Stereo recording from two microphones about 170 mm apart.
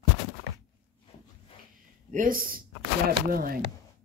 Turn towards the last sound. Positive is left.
turn(degrees=-60)  # may be behind; listen again after turning